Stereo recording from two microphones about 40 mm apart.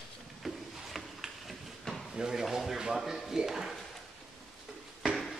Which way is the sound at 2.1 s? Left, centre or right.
Centre.